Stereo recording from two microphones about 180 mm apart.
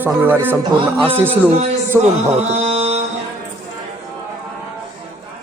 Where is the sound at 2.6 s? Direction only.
35° right (ahead or behind).